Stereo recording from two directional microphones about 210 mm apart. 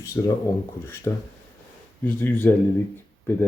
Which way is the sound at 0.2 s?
15° left (ahead or behind).